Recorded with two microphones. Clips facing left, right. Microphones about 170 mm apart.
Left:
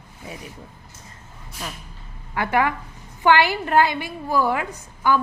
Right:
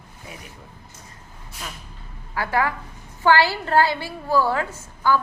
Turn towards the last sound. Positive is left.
turn(degrees=15)  # may be behind; listen again after turning